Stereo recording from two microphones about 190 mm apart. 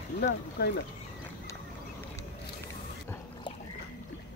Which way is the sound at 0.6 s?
55° left (ahead or behind).